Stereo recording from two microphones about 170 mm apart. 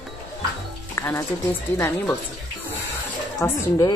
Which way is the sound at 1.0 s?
15° left (ahead or behind).